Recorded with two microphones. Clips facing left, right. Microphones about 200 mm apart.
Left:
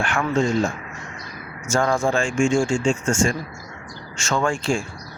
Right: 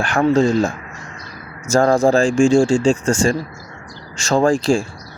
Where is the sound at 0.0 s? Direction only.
35° right (ahead or behind).